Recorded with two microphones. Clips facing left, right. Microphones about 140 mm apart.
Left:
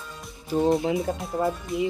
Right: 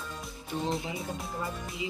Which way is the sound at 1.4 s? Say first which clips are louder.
Left 13 dB; 50° left (ahead or behind).